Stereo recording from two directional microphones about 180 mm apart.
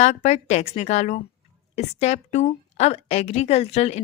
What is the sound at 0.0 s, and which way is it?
A woman's voice, 40° left (ahead or behind).